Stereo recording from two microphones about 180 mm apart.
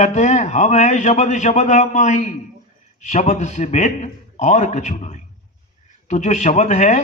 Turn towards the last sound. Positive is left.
turn(degrees=40)  # may be behind; listen again after turning